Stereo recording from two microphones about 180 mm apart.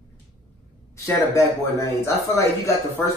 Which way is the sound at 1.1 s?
15° left (ahead or behind).